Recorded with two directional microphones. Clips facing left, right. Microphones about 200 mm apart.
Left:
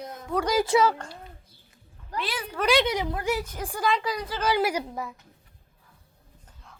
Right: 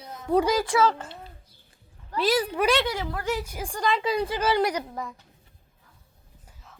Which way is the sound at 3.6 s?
5° left (ahead or behind).